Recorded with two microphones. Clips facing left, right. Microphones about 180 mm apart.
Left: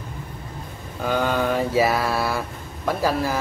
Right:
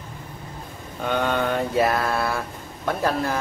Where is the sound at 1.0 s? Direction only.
Centre (ahead or behind).